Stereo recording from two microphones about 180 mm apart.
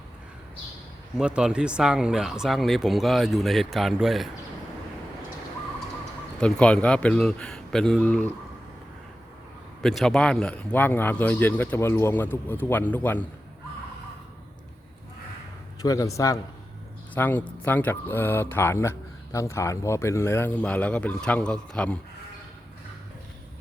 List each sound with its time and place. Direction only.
1.2 s speech: 5° right (ahead or behind)
6.4 s speech: 5° left (ahead or behind)
9.8 s speech: centre (ahead or behind)
15.8 s a man's voice: 20° left (ahead or behind)